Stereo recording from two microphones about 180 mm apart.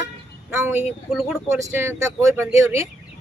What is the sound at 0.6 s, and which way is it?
Speech, 10° right (ahead or behind).